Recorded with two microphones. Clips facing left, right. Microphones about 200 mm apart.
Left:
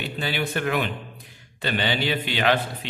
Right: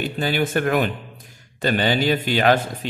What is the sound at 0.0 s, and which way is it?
A man's voice, 45° right (ahead or behind).